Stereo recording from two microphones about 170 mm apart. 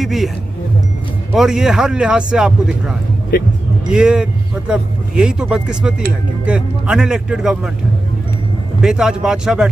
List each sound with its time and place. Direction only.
0.0 s a man's voice: centre (ahead or behind)
1.3 s a man's voice: centre (ahead or behind)
3.3 s speech: 55° left (ahead or behind)
3.9 s a man's voice: 5° right (ahead or behind)
8.8 s a man's voice: 5° right (ahead or behind)